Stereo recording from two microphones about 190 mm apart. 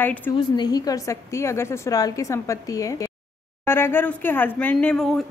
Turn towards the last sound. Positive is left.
turn(degrees=5)  # may be behind; listen again after turning